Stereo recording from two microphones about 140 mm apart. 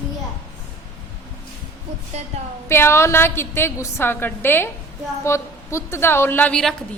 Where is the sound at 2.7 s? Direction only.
20° left (ahead or behind).